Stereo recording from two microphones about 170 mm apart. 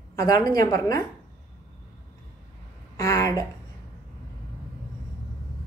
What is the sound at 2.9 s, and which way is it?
Speech, 20° left (ahead or behind).